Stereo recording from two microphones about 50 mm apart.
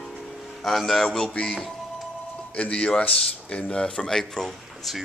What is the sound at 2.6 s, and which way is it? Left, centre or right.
A man's voice, left.